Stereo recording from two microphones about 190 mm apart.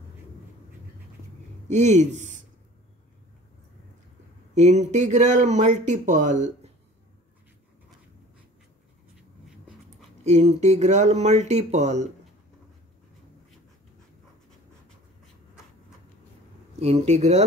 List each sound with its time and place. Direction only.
1.7 s speech: 35° right (ahead or behind)
4.6 s speech: 35° right (ahead or behind)
10.2 s speech: 35° right (ahead or behind)
16.8 s speech: 30° right (ahead or behind)